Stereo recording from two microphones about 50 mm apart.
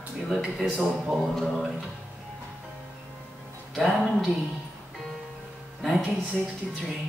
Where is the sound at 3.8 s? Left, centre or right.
Centre.